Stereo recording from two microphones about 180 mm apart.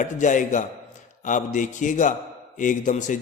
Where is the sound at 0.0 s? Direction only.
45° left (ahead or behind).